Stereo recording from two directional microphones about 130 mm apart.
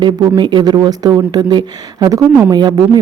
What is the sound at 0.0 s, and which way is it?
Speech, 35° right (ahead or behind).